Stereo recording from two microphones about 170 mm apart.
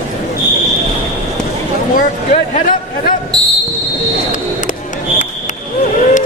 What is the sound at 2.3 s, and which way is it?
Speech, 45° left (ahead or behind).